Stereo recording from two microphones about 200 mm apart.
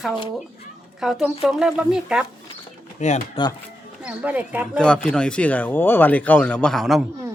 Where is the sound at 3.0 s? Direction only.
35° left (ahead or behind).